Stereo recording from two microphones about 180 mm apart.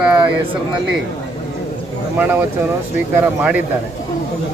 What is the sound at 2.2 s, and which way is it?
Speech, 10° right (ahead or behind).